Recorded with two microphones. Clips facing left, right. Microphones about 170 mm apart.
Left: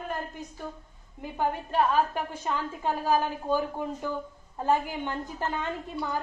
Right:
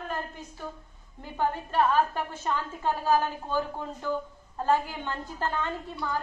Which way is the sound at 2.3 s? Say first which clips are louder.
Even; 15° left (ahead or behind).